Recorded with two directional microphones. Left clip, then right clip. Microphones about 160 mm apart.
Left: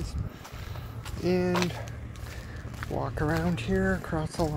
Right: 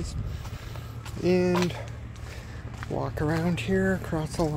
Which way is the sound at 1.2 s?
50° right (ahead or behind).